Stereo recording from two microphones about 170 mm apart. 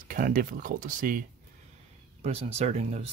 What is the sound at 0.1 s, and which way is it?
Speech, 55° right (ahead or behind).